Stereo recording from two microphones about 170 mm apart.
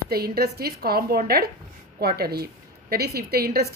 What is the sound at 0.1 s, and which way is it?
A woman's voice, 65° right (ahead or behind).